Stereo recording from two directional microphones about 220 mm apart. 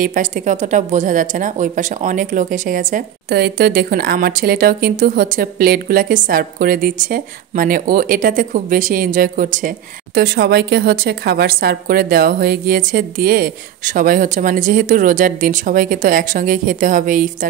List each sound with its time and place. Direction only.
0.0 s a woman's voice: 35° right (ahead or behind)